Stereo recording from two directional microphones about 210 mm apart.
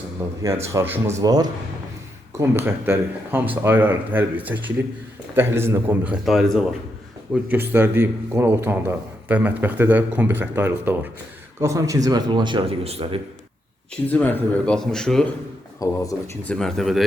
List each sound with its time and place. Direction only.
0.2 s a man's voice: 15° right (ahead or behind)
14.1 s speech: 10° left (ahead or behind)
15.8 s speech: 15° left (ahead or behind)
16.5 s speech: centre (ahead or behind)